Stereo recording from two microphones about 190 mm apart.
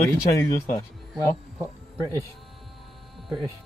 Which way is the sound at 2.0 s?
15° right (ahead or behind).